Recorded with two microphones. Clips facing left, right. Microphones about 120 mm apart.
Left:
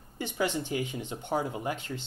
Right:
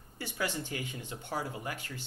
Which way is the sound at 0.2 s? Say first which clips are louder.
Left 5 dB; 20° left (ahead or behind).